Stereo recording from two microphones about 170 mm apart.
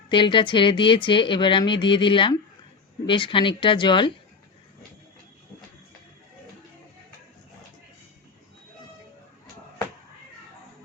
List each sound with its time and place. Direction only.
0.1 s speech: 30° left (ahead or behind)